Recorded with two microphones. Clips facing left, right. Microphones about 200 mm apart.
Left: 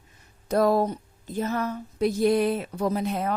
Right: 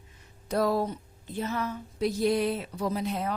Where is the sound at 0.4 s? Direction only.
50° left (ahead or behind).